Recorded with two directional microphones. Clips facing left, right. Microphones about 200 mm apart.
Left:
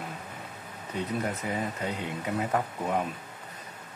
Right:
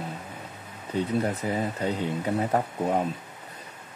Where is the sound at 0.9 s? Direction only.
30° right (ahead or behind).